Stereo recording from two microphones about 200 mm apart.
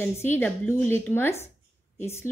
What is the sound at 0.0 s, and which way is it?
A woman's voice, 10° left (ahead or behind).